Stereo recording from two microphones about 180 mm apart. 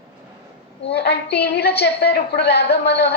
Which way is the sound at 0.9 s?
70° left (ahead or behind).